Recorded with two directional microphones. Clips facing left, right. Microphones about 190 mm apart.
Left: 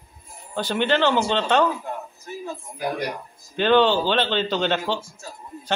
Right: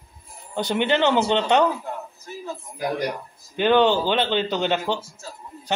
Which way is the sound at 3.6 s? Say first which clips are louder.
Even; 15° right (ahead or behind).